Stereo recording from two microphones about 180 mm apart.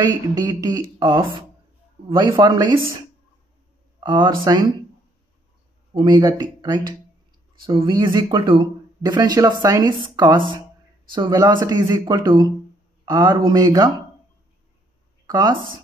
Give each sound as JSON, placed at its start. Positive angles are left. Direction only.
{"t": 0.0, "sound": "speech", "side_deg": -20}
{"t": 5.9, "sound": "speech", "side_deg": -25}
{"t": 15.2, "sound": "speech", "side_deg": -20}